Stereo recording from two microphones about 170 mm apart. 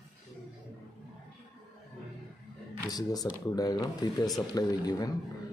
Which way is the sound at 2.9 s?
20° left (ahead or behind).